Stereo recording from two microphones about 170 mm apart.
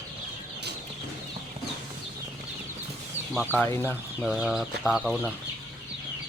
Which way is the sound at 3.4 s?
10° left (ahead or behind).